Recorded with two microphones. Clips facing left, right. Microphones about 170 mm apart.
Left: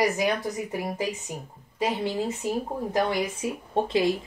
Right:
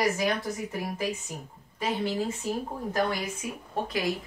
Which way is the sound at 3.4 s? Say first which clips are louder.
Left 6 dB; 25° left (ahead or behind).